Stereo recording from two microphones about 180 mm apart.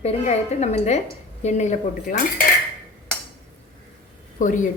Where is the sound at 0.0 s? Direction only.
35° left (ahead or behind).